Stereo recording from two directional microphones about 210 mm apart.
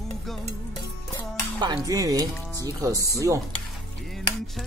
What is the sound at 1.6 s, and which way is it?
Speech, 20° right (ahead or behind).